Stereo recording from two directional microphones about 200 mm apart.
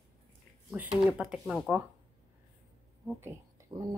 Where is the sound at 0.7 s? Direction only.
5° right (ahead or behind).